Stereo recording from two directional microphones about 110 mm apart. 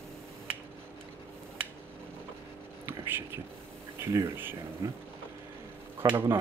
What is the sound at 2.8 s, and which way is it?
Whispering, 20° right (ahead or behind).